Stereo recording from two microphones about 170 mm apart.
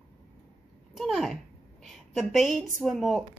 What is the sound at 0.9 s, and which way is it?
A woman's voice, centre (ahead or behind).